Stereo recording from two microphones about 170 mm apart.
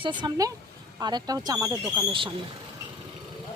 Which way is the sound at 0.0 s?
25° right (ahead or behind).